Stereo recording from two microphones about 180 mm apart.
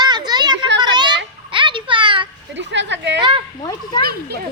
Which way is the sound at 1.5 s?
25° right (ahead or behind).